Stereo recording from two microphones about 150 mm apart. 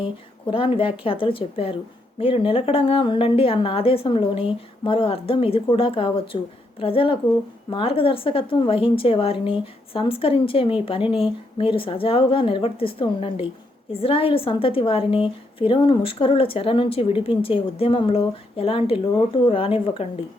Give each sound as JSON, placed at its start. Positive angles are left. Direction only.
{"t": 0.0, "sound": "a woman's voice", "side_deg": 35}